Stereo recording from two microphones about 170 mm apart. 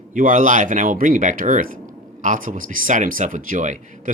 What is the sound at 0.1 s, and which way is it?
Speech, 50° right (ahead or behind).